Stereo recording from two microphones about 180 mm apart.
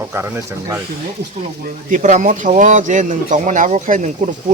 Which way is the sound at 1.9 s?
45° right (ahead or behind).